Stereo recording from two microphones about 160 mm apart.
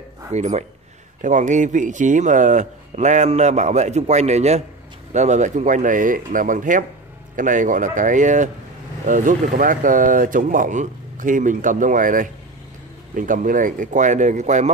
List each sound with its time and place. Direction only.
0.3 s speech: 45° right (ahead or behind)